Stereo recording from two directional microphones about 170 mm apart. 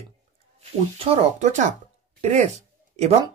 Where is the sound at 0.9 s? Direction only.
40° right (ahead or behind).